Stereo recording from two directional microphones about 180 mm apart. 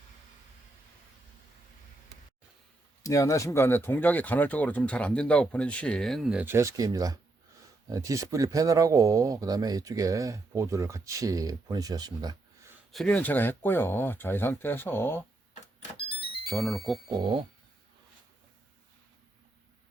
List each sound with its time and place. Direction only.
3.0 s speech: 20° left (ahead or behind); by 12.4 s 20° right (ahead or behind)
12.9 s speech: 5° left (ahead or behind)
16.4 s speech: centre (ahead or behind)
17.1 s speech: 25° right (ahead or behind)